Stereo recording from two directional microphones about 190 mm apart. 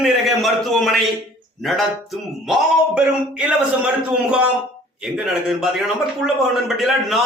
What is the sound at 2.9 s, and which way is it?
A man's voice, 5° right (ahead or behind).